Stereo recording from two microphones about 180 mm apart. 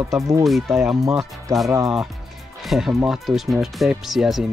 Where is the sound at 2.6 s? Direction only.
Centre (ahead or behind).